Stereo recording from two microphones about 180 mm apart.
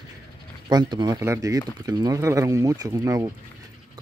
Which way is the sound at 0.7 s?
25° right (ahead or behind).